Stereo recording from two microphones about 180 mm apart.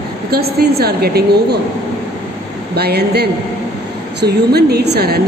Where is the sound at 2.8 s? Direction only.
65° right (ahead or behind).